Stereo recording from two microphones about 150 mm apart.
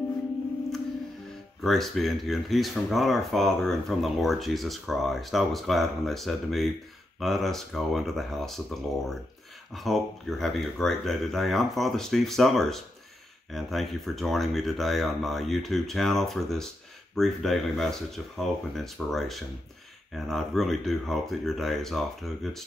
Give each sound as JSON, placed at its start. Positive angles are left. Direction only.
{"t": 1.6, "sound": "speech", "side_deg": 0}
{"t": 9.8, "sound": "speech", "side_deg": 0}